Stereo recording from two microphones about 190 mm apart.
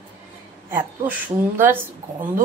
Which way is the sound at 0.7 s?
10° right (ahead or behind).